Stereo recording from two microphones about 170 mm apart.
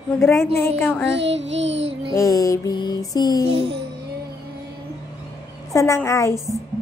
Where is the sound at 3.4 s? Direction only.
35° right (ahead or behind).